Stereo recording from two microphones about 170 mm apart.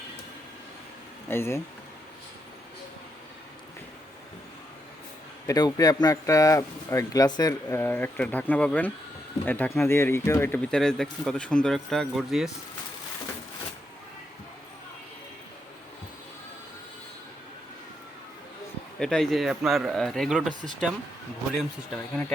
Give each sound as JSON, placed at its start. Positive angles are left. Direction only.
{"t": 1.3, "sound": "speech", "side_deg": 15}
{"t": 5.5, "sound": "speech", "side_deg": 20}
{"t": 18.9, "sound": "speech", "side_deg": 5}
{"t": 21.9, "sound": "speech", "side_deg": 10}